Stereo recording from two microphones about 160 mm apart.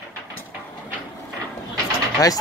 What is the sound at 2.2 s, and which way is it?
Speech, 25° left (ahead or behind).